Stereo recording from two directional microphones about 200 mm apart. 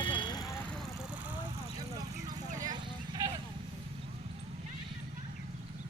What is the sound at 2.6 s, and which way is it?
Vehicle, 20° right (ahead or behind).